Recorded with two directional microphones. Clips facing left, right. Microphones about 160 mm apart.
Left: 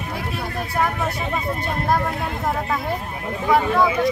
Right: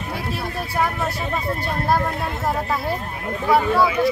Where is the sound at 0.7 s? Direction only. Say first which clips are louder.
Even; centre (ahead or behind).